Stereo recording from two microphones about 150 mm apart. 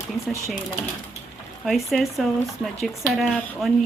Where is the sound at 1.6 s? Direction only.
Centre (ahead or behind).